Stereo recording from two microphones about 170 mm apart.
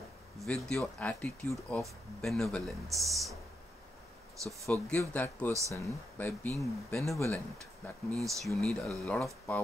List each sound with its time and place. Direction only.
0.4 s speech: 5° left (ahead or behind)
4.7 s speech: 10° left (ahead or behind)